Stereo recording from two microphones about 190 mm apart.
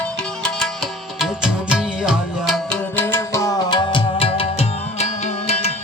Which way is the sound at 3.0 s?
10° left (ahead or behind).